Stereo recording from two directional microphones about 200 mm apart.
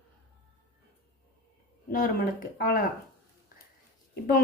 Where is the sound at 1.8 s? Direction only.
45° left (ahead or behind).